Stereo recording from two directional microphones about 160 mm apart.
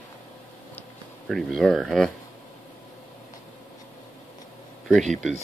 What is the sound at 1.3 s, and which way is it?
Speech, centre (ahead or behind).